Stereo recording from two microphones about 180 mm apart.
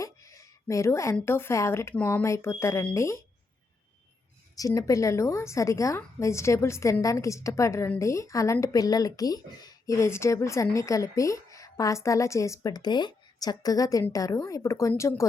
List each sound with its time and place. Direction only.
0.0 s a sound: 20° left (ahead or behind)
1.1 s a woman's voice: 15° left (ahead or behind)
4.5 s a woman's voice: 20° left (ahead or behind)